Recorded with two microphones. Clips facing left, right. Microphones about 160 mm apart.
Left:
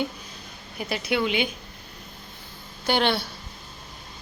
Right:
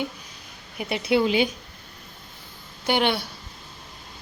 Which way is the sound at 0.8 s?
25° right (ahead or behind).